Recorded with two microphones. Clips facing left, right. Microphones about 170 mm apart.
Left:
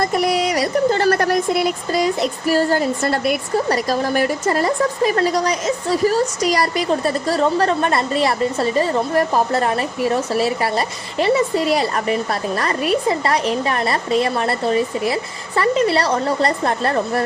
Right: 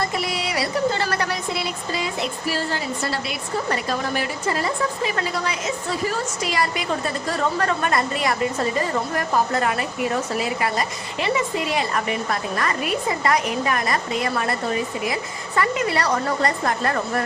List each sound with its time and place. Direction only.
0.0 s speech: 45° left (ahead or behind)
3.7 s speech: 40° left (ahead or behind)